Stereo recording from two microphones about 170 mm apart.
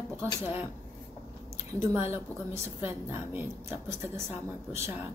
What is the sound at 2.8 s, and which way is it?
A woman's voice, 10° right (ahead or behind).